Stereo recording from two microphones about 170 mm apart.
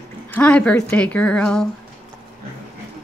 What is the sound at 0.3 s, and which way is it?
A woman's voice, 5° left (ahead or behind).